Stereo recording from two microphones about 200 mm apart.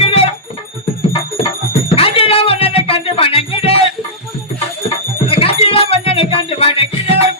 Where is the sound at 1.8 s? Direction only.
30° left (ahead or behind).